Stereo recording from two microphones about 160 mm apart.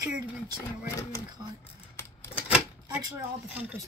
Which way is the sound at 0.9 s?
20° left (ahead or behind).